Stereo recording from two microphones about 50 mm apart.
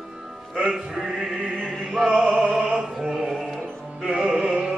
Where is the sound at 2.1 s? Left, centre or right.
Centre.